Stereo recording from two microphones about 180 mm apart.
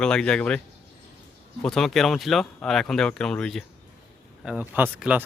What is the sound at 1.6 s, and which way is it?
Speech, centre (ahead or behind).